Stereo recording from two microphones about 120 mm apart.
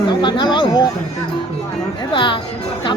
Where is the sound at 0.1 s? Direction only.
40° left (ahead or behind).